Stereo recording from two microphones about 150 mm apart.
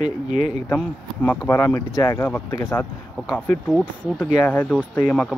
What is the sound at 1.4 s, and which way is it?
Speech, 15° left (ahead or behind).